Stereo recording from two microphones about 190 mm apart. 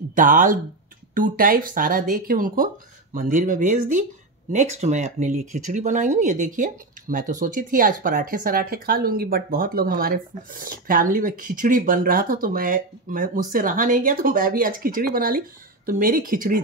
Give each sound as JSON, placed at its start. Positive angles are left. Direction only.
{"t": 0.1, "sound": "speech", "side_deg": -45}